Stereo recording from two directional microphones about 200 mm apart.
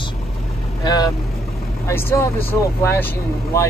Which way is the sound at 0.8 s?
20° left (ahead or behind).